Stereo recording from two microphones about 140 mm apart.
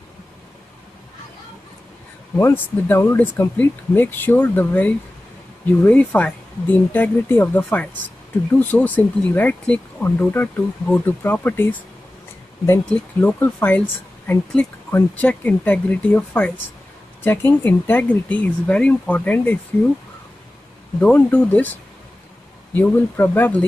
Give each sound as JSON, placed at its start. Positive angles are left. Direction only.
{"t": 2.3, "sound": "speech", "side_deg": 15}
{"t": 21.0, "sound": "speech", "side_deg": 10}
{"t": 22.8, "sound": "speech", "side_deg": 15}